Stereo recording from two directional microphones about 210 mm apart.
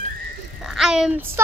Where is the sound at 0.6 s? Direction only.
Centre (ahead or behind).